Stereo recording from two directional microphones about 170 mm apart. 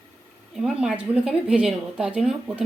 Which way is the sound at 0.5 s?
5° right (ahead or behind).